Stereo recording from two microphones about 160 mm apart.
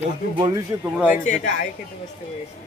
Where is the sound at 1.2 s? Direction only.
50° left (ahead or behind).